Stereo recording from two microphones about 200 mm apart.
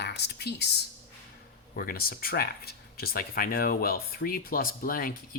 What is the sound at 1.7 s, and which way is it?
Speech, 45° left (ahead or behind).